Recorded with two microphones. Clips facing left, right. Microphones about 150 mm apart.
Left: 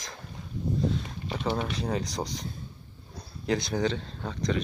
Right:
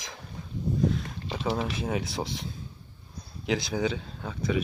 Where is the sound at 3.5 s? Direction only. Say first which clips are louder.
Left 1 dB; centre (ahead or behind).